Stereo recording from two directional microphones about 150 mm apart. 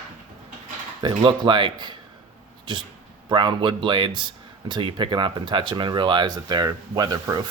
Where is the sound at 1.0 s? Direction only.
30° right (ahead or behind).